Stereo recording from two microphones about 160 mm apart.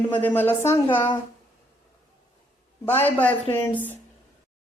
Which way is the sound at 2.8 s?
10° left (ahead or behind).